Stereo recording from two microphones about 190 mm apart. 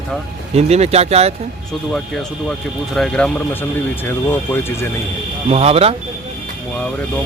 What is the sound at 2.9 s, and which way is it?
Speech, 5° left (ahead or behind).